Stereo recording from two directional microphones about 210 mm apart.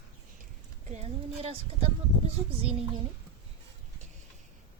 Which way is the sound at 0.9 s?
30° right (ahead or behind).